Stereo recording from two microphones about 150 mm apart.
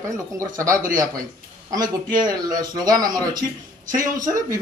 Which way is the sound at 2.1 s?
30° right (ahead or behind).